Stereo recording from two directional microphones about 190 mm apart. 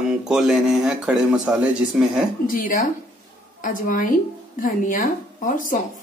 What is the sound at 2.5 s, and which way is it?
A woman's voice, 45° left (ahead or behind).